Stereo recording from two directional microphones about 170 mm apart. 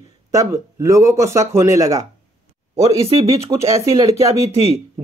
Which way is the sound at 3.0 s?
35° right (ahead or behind).